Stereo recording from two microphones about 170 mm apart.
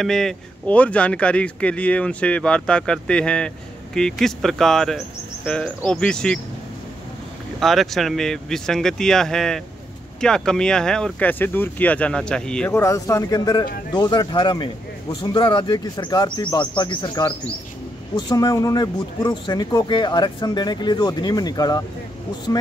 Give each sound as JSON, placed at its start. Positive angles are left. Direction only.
{"t": 0.0, "sound": "speech", "side_deg": 0}
{"t": 7.6, "sound": "speech", "side_deg": 0}
{"t": 12.7, "sound": "speech", "side_deg": 20}